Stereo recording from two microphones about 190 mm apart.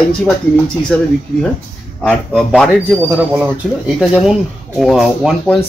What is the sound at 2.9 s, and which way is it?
Speech, 10° right (ahead or behind).